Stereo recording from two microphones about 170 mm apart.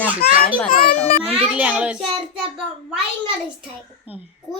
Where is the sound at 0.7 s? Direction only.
60° left (ahead or behind).